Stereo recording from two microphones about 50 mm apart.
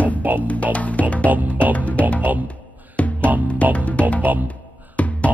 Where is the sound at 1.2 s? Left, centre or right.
Right.